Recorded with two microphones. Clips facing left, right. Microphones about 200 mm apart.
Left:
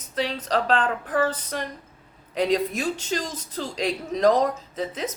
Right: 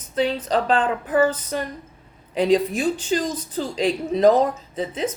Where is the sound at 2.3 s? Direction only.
Centre (ahead or behind).